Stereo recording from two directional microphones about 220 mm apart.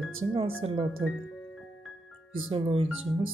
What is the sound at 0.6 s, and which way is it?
Speech, 25° right (ahead or behind).